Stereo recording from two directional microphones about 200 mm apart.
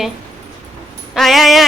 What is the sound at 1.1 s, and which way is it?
Speech, centre (ahead or behind).